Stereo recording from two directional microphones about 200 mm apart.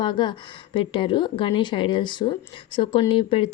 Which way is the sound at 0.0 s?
20° left (ahead or behind).